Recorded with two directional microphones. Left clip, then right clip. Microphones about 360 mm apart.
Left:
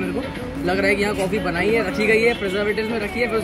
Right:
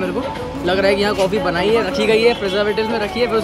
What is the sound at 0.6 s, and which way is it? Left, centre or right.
Speech, centre.